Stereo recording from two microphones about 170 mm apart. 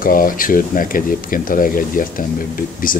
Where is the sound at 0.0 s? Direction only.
55° left (ahead or behind).